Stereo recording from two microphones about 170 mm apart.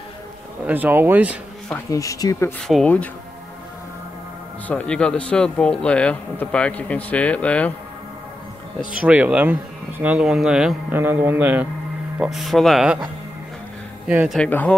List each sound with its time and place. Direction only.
0.7 s speech: 10° right (ahead or behind)
1.9 s speech: 20° left (ahead or behind)
2.7 s speech: 5° left (ahead or behind)
4.6 s speech: 5° left (ahead or behind)
8.9 s speech: 10° right (ahead or behind)
14.0 s speech: 5° right (ahead or behind)
14.4 s speech: 10° left (ahead or behind)